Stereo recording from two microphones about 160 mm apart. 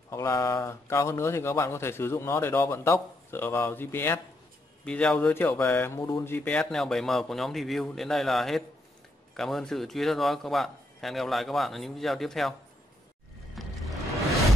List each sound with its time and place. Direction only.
0.1 s speech: 20° left (ahead or behind); by 12.5 s centre (ahead or behind)
13.6 s music: centre (ahead or behind)